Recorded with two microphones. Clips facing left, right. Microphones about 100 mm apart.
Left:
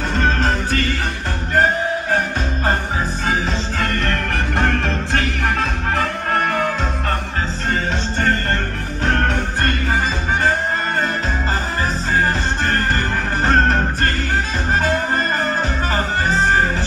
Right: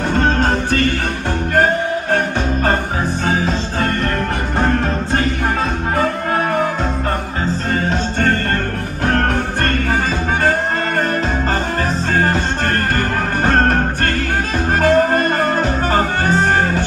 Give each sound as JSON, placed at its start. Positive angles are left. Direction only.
{"t": 0.2, "sound": "music", "side_deg": -40}
{"t": 2.0, "sound": "music", "side_deg": -45}
{"t": 7.7, "sound": "music", "side_deg": -40}
{"t": 13.5, "sound": "music", "side_deg": -45}
{"t": 14.8, "sound": "music", "side_deg": -55}